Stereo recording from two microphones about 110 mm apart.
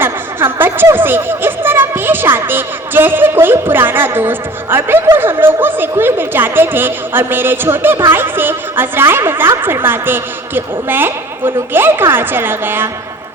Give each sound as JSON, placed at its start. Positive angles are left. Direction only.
{"t": 0.0, "sound": "speech", "side_deg": -20}